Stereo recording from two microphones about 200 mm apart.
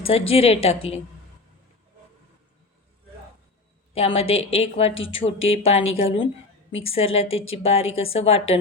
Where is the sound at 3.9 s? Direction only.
30° left (ahead or behind).